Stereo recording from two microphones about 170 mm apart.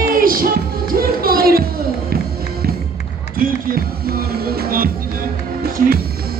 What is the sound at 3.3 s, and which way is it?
Run, 55° right (ahead or behind).